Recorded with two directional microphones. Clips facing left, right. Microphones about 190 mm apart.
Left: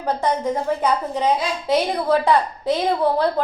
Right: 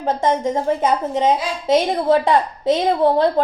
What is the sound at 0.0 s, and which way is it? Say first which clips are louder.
A woman's voice: right 3 dB; 25° right (ahead or behind).